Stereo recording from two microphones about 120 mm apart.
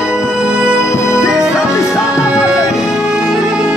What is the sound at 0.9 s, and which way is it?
Music, 25° left (ahead or behind).